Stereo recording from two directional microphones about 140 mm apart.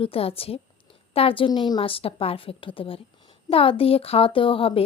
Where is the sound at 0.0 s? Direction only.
45° left (ahead or behind).